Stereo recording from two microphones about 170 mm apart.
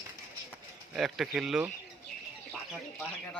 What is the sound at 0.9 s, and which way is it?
Speech, centre (ahead or behind).